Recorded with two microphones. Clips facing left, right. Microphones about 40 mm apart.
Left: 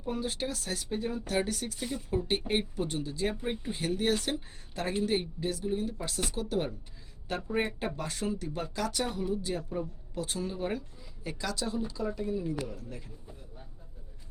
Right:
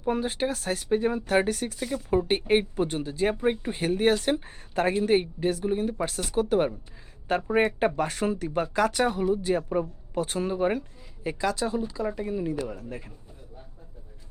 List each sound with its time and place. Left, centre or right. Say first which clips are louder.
0.0 s speech: right 7 dB; right
12.0 s speech: right 4 dB; right